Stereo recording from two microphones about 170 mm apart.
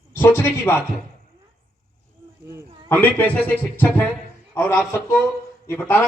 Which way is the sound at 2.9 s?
10° left (ahead or behind).